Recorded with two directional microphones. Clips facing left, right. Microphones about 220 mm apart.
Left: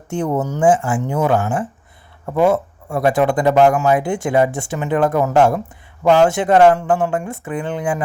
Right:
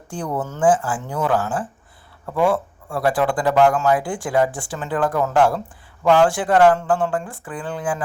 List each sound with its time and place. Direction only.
0.1 s speech: 25° left (ahead or behind)